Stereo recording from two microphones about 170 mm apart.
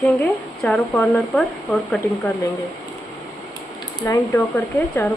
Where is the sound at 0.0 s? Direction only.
Centre (ahead or behind).